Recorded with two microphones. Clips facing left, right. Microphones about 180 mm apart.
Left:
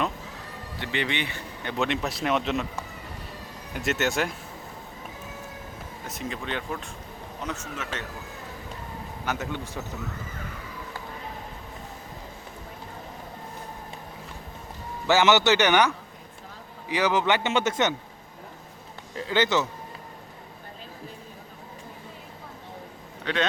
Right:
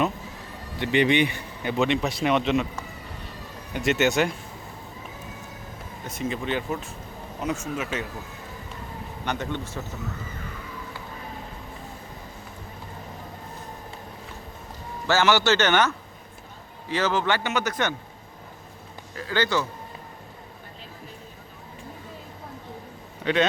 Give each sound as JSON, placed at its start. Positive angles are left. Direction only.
{"t": 0.8, "sound": "speech", "side_deg": -15}
{"t": 1.7, "sound": "speech", "side_deg": 0}
{"t": 3.8, "sound": "speech", "side_deg": 0}
{"t": 6.1, "sound": "speech", "side_deg": 0}
{"t": 9.2, "sound": "speech", "side_deg": 5}
{"t": 15.0, "sound": "speech", "side_deg": 15}
{"t": 16.9, "sound": "a man's voice", "side_deg": 15}
{"t": 19.1, "sound": "a man's voice", "side_deg": 20}
{"t": 23.2, "sound": "speech", "side_deg": -5}